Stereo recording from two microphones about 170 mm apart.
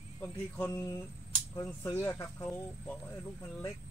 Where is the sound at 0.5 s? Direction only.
15° left (ahead or behind).